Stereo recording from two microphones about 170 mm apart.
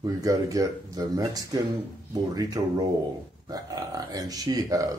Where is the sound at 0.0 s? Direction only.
20° right (ahead or behind).